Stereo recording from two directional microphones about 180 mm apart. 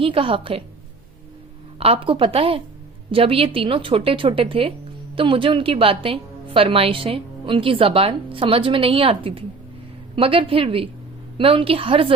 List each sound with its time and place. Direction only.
0.0 s a woman's voice: 30° right (ahead or behind)
1.8 s a woman's voice: 30° right (ahead or behind)